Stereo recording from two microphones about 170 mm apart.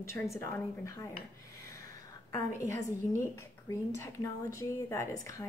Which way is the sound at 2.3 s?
20° left (ahead or behind).